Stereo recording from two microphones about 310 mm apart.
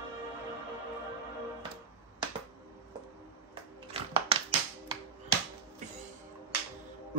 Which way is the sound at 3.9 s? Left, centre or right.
Centre.